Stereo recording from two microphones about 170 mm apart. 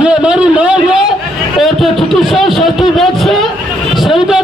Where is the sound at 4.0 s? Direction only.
Centre (ahead or behind).